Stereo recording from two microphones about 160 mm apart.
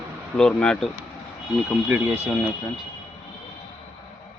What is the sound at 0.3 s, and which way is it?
Speech, 5° left (ahead or behind).